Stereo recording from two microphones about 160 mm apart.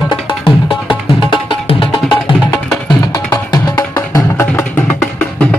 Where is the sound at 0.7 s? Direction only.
30° left (ahead or behind).